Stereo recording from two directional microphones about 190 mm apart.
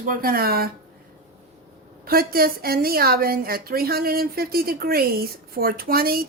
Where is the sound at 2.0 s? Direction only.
50° right (ahead or behind).